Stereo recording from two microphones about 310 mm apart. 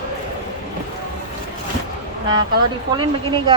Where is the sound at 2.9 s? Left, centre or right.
Centre.